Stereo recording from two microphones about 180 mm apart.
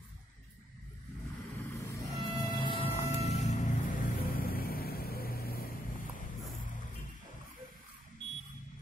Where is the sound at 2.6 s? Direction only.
30° left (ahead or behind); by 6.3 s 50° left (ahead or behind).